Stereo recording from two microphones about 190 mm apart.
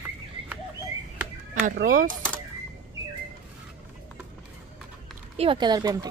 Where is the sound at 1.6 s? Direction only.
45° right (ahead or behind).